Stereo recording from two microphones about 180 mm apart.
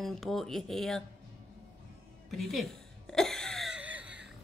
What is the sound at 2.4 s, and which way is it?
Speech, centre (ahead or behind).